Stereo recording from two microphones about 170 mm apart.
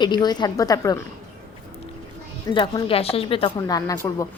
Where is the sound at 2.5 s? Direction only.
30° left (ahead or behind).